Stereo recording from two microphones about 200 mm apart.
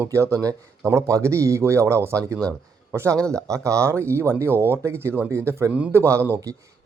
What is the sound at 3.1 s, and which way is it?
Speech, 5° left (ahead or behind).